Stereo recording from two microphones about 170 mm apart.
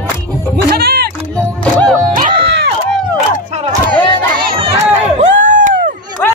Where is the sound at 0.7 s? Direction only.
65° right (ahead or behind).